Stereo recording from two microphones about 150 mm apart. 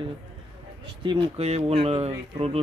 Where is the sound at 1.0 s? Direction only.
40° right (ahead or behind).